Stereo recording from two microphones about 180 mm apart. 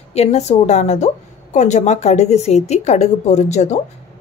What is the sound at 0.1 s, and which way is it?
Speech, 35° left (ahead or behind).